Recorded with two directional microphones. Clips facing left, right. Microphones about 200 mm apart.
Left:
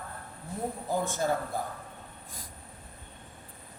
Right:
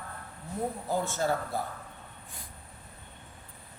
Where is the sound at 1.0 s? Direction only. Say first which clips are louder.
Left 1 dB; 15° left (ahead or behind).